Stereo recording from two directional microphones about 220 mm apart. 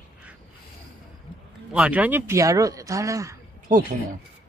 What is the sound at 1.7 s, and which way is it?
Speech, 5° right (ahead or behind).